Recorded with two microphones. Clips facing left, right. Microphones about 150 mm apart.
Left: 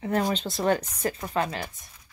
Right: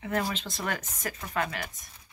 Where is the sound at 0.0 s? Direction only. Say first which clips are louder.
Left 5 dB; 35° left (ahead or behind).